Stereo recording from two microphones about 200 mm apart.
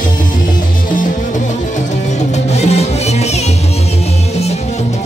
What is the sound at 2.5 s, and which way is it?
Music, 30° left (ahead or behind).